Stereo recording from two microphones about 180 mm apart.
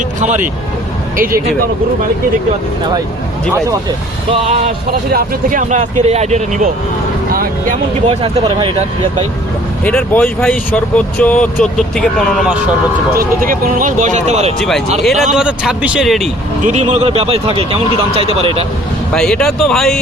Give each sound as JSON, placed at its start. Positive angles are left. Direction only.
{"t": 1.1, "sound": "speech", "side_deg": -50}
{"t": 3.5, "sound": "speech", "side_deg": -20}
{"t": 4.9, "sound": "speech", "side_deg": -55}
{"t": 8.0, "sound": "speech", "side_deg": -30}
{"t": 9.8, "sound": "a man's voice", "side_deg": 10}
{"t": 13.1, "sound": "speech", "side_deg": -50}
{"t": 15.0, "sound": "a man's voice", "side_deg": 0}
{"t": 16.6, "sound": "a man's voice", "side_deg": -40}
{"t": 19.1, "sound": "a man's voice", "side_deg": 5}